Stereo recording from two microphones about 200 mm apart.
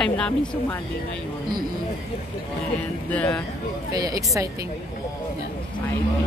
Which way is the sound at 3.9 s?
20° right (ahead or behind).